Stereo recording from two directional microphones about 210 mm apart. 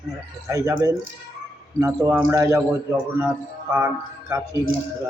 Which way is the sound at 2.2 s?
15° right (ahead or behind).